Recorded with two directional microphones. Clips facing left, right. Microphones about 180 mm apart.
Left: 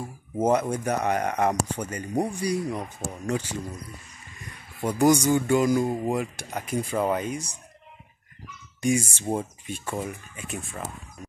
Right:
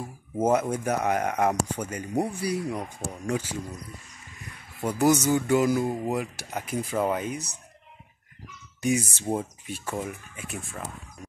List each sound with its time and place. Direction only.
0.4 s speech: 10° right (ahead or behind)
4.8 s speech: 5° right (ahead or behind)
9.2 s speech: centre (ahead or behind)